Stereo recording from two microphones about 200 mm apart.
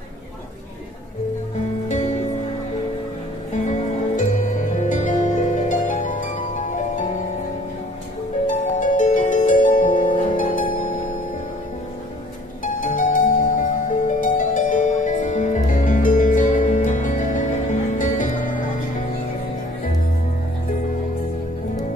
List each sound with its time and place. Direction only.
1.9 s music: 35° left (ahead or behind)
3.6 s music: 40° left (ahead or behind)
8.5 s music: 40° left (ahead or behind)
12.8 s music: 40° left (ahead or behind)